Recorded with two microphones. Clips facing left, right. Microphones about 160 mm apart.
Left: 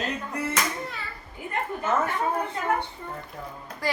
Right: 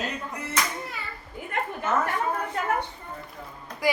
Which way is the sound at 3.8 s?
10° right (ahead or behind).